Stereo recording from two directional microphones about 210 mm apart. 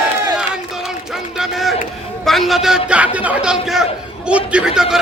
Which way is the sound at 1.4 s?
Centre (ahead or behind).